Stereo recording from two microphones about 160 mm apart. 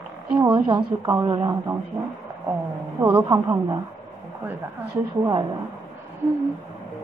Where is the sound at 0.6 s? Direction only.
25° right (ahead or behind).